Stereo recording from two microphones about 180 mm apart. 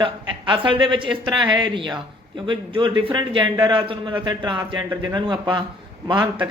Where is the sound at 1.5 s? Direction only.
25° right (ahead or behind).